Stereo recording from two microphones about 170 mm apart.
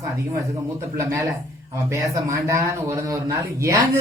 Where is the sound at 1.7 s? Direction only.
15° right (ahead or behind).